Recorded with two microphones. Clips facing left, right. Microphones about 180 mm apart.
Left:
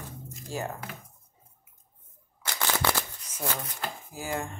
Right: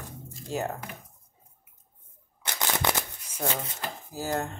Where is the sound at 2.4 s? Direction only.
20° right (ahead or behind).